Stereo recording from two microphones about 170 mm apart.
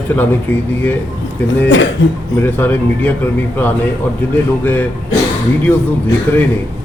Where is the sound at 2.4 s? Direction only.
10° left (ahead or behind).